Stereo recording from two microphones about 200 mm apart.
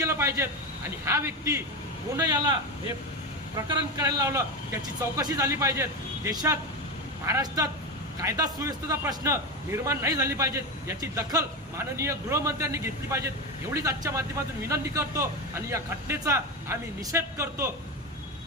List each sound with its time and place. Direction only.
0.0 s a sound: 15° right (ahead or behind)
1.0 s a man's voice: 15° right (ahead or behind)
3.7 s a man's voice: 20° right (ahead or behind)